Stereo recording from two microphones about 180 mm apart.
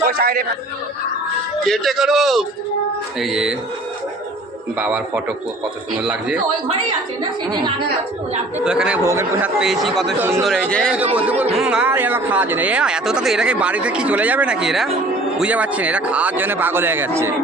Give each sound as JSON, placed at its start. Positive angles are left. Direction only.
{"t": 0.1, "sound": "a man's voice", "side_deg": -55}
{"t": 1.6, "sound": "speech", "side_deg": 0}
{"t": 4.8, "sound": "speech", "side_deg": -5}
{"t": 8.5, "sound": "speech", "side_deg": -5}
{"t": 10.2, "sound": "speech", "side_deg": -15}
{"t": 10.7, "sound": "speech", "side_deg": 5}
{"t": 10.9, "sound": "speech", "side_deg": -5}